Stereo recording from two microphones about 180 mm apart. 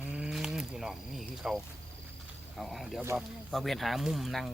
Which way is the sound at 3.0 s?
15° right (ahead or behind).